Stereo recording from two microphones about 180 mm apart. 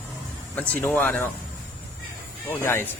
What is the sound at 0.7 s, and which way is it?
Speech, 10° left (ahead or behind).